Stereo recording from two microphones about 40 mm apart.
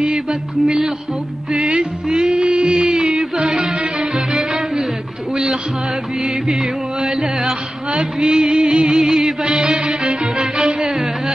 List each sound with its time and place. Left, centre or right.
0.0 s music: centre